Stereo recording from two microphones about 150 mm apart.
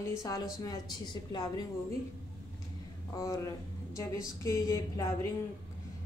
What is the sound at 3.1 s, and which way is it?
Speech, 25° left (ahead or behind).